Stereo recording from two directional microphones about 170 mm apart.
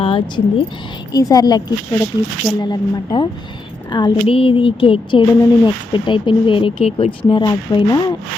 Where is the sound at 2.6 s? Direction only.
30° left (ahead or behind).